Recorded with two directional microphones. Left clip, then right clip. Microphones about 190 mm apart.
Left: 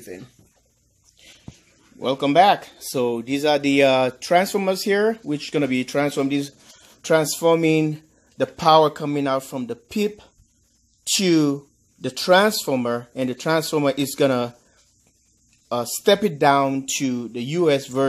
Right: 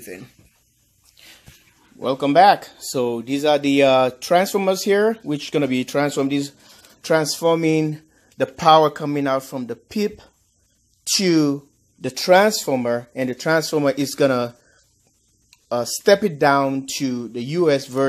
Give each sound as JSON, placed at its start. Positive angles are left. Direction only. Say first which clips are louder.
{"t": 2.0, "sound": "speech", "louder": "right 2 dB", "side_deg": -10}
{"t": 7.0, "sound": "speech", "louder": "even", "side_deg": -5}
{"t": 15.7, "sound": "speech", "louder": "right 2 dB", "side_deg": -10}